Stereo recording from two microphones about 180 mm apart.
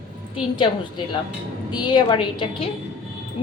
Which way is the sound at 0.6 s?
25° left (ahead or behind).